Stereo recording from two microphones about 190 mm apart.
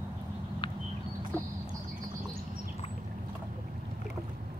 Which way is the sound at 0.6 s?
25° left (ahead or behind).